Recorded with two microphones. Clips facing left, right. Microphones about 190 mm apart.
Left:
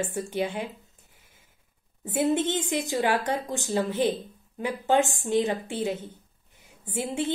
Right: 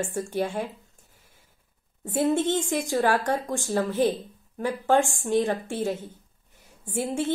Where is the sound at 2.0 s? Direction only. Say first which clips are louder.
Right 1 dB; 20° left (ahead or behind).